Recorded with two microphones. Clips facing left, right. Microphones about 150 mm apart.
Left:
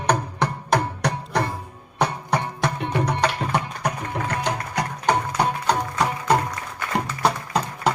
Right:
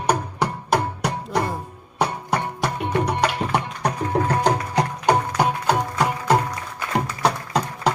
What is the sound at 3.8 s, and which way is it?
Music, 30° right (ahead or behind).